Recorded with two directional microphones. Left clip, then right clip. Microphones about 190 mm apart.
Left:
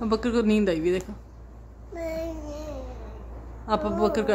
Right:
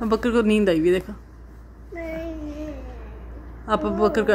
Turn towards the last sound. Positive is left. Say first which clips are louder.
# right 4 dB
turn(degrees=-15)  # may be behind; listen again after turning